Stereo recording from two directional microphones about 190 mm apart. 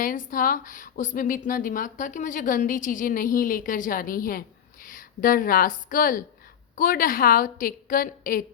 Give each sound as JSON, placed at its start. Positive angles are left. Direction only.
{"t": 0.0, "sound": "a woman's voice", "side_deg": 45}